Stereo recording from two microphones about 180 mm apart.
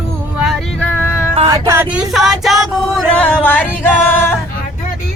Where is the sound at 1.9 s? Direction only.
Centre (ahead or behind).